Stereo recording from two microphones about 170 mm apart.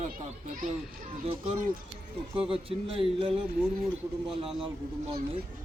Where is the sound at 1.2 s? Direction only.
35° right (ahead or behind).